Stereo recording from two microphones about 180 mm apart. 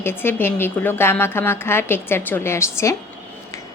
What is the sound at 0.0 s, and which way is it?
A woman's voice, 10° left (ahead or behind).